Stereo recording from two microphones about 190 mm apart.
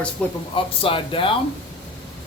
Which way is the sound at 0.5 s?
30° left (ahead or behind).